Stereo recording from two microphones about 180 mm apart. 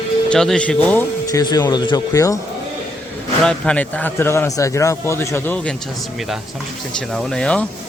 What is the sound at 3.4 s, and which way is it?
Speech, 5° left (ahead or behind).